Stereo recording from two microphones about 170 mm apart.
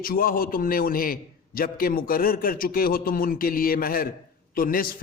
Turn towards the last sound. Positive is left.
turn(degrees=60)  # may be behind; listen again after turning